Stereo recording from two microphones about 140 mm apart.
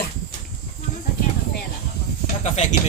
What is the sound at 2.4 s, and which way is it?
Speech, 60° left (ahead or behind).